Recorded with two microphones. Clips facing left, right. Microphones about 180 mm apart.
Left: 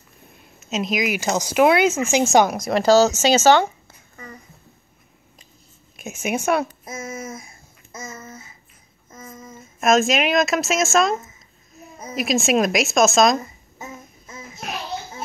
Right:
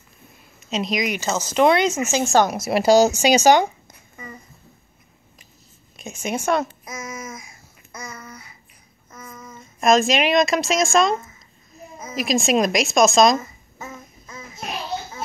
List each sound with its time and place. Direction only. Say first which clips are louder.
0.6 s speech: left 1 dB; centre (ahead or behind)
2.4 s speech: even; 5° right (ahead or behind)
5.9 s a woman's voice: left 2 dB; 5° left (ahead or behind)
6.8 s child singing: left 2 dB; 25° left (ahead or behind)
7.9 s babbling: left 1 dB; 25° left (ahead or behind)
9.1 s child singing: left 1 dB; 25° left (ahead or behind)
9.8 s a woman's voice: even; centre (ahead or behind)
11.8 s a sound: right 2 dB; centre (ahead or behind)
12.4 s a woman's voice: even; centre (ahead or behind)
13.7 s child singing: even; 25° left (ahead or behind)